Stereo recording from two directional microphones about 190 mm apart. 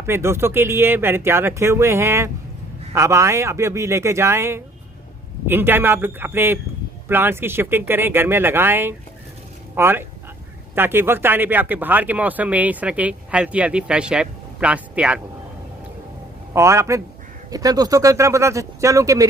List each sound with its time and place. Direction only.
0.0 s speech: 15° right (ahead or behind)
16.5 s speech: 15° right (ahead or behind)